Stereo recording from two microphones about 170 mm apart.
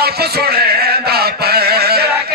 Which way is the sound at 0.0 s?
70° right (ahead or behind).